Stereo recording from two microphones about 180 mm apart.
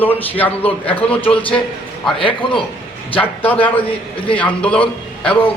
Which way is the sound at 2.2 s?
30° left (ahead or behind).